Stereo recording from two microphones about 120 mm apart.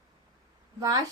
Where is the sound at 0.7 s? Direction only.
25° right (ahead or behind).